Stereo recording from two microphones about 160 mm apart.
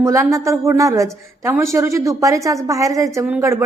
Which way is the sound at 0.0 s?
20° right (ahead or behind).